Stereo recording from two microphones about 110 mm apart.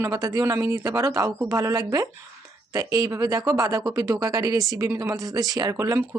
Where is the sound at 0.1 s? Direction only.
35° right (ahead or behind).